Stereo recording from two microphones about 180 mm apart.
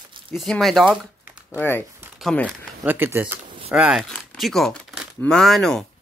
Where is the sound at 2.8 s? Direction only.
10° right (ahead or behind).